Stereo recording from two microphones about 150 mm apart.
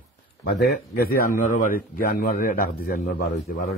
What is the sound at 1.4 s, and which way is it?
A man's voice, 70° left (ahead or behind).